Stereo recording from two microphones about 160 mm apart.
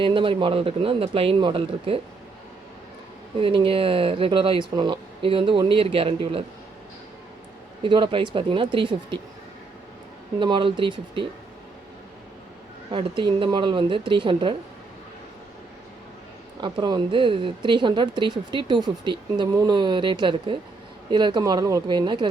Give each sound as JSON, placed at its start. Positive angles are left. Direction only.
{"t": 0.0, "sound": "speech", "side_deg": -30}
{"t": 3.4, "sound": "speech", "side_deg": -35}
{"t": 7.8, "sound": "speech", "side_deg": -30}
{"t": 10.4, "sound": "speech", "side_deg": -30}
{"t": 12.9, "sound": "speech", "side_deg": -30}
{"t": 16.6, "sound": "speech", "side_deg": -30}